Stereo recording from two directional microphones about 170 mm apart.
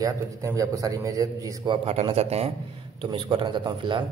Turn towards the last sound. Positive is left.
turn(degrees=-30)  # may be behind; listen again after turning